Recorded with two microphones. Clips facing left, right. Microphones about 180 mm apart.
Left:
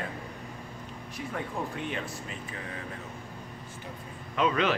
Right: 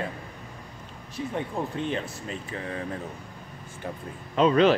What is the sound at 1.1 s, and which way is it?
Speech, 30° right (ahead or behind).